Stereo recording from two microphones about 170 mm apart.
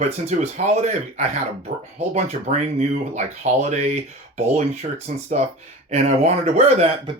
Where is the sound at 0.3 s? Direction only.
40° right (ahead or behind).